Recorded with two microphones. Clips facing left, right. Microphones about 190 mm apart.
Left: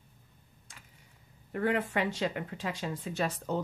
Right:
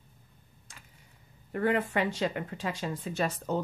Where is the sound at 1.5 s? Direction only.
45° right (ahead or behind).